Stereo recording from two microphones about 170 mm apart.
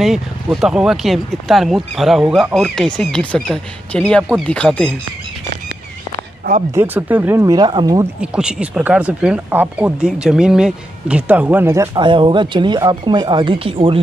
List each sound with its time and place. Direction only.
0.0 s speech: centre (ahead or behind)
6.7 s speech: 15° right (ahead or behind)
8.2 s speech: 5° right (ahead or behind)
11.9 s speech: 30° right (ahead or behind)